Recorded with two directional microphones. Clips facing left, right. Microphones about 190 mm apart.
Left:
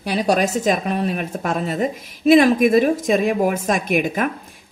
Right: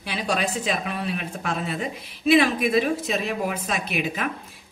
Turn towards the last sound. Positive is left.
turn(degrees=50)  # may be behind; listen again after turning